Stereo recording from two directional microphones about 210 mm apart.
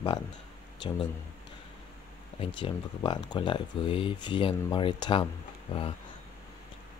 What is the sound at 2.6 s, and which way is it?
Speech, 20° left (ahead or behind).